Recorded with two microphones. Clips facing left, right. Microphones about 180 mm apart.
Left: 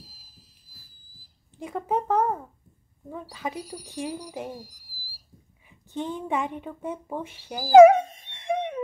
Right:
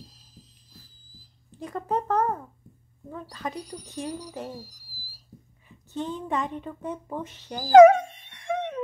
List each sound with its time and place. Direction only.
0.0 s a sound: 5° left (ahead or behind)
3.1 s a woman's voice: 5° left (ahead or behind)
8.3 s dog: 20° left (ahead or behind)